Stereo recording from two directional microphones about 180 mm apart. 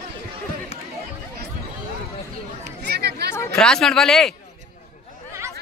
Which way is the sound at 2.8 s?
65° right (ahead or behind).